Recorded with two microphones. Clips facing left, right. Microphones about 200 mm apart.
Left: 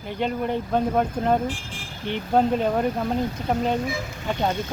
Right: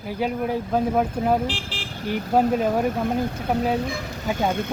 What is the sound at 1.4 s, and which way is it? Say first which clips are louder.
Speech: right 1 dB; 70° right (ahead or behind).